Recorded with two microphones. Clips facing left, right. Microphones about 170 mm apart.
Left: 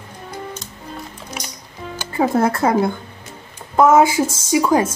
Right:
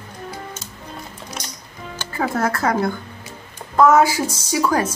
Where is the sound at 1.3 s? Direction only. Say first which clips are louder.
Left 2 dB; 10° left (ahead or behind).